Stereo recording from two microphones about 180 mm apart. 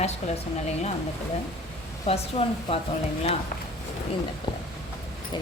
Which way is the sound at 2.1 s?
35° left (ahead or behind).